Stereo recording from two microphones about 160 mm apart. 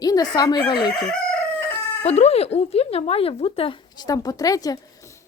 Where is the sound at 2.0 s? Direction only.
40° left (ahead or behind).